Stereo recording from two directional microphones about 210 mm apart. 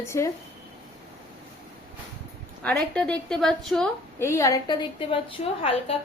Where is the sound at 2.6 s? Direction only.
5° left (ahead or behind).